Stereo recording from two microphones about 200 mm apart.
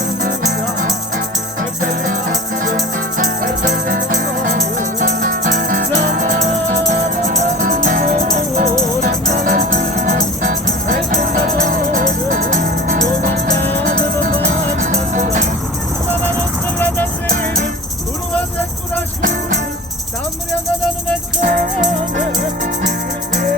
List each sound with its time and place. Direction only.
1.8 s music: 45° right (ahead or behind)
3.2 s music: 45° right (ahead or behind)
13.6 s music: 10° left (ahead or behind)
13.8 s music: 40° right (ahead or behind)
16.7 s music: 10° left (ahead or behind)
19.2 s jingle bell: 40° right (ahead or behind)
21.4 s music: 45° right (ahead or behind)